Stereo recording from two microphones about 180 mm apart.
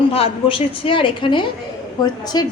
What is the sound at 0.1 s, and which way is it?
A woman's voice, 30° left (ahead or behind).